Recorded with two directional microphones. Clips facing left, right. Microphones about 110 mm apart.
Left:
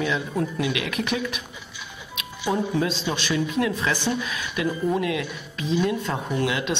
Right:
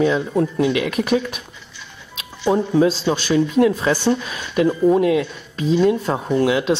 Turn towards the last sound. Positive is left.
turn(degrees=-35)  # may be behind; listen again after turning